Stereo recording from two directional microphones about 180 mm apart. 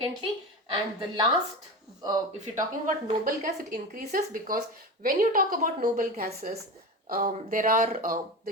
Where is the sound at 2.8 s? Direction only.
50° right (ahead or behind).